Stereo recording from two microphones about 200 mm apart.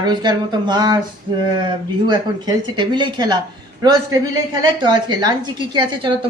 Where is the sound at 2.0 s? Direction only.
20° right (ahead or behind).